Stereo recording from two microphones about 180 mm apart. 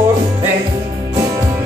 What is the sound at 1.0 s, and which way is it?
Music, 20° right (ahead or behind).